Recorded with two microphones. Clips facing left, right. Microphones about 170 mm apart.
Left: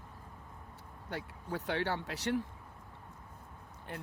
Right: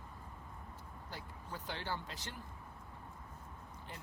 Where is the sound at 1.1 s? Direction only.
70° left (ahead or behind).